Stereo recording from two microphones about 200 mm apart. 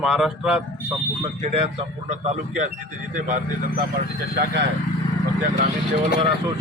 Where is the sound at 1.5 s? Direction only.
30° right (ahead or behind).